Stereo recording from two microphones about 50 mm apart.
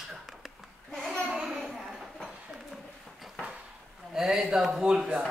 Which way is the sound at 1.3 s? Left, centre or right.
Centre.